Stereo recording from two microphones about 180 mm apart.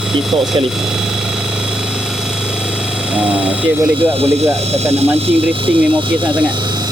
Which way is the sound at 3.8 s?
30° right (ahead or behind).